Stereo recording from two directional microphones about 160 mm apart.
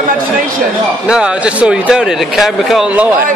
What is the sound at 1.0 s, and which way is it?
Speech, 5° right (ahead or behind).